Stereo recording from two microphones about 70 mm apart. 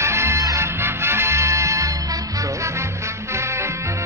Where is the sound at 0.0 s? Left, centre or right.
Right.